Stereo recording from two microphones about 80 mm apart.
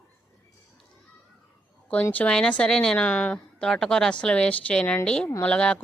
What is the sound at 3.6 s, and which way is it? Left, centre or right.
A woman's voice, centre.